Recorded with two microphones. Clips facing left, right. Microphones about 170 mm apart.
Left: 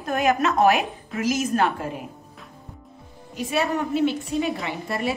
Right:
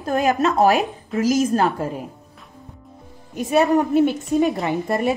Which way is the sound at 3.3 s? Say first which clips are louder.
Right 7 dB; 45° right (ahead or behind).